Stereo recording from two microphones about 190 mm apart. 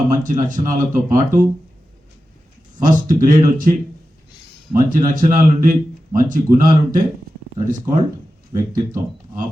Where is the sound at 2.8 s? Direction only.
45° right (ahead or behind).